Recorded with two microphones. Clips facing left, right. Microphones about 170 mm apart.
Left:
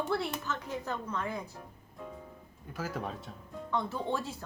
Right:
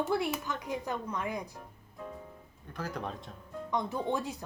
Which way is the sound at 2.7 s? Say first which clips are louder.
Left 1 dB; 5° left (ahead or behind).